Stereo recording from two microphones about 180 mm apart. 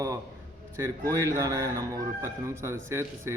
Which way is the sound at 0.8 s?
15° right (ahead or behind).